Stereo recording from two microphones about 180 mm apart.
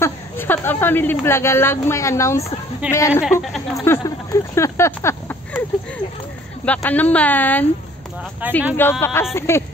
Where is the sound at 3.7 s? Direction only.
15° left (ahead or behind).